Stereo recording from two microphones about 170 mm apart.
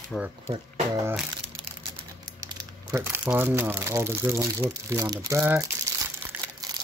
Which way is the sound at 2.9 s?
10° right (ahead or behind).